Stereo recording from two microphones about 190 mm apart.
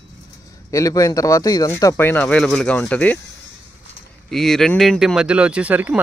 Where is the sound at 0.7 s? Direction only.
15° left (ahead or behind).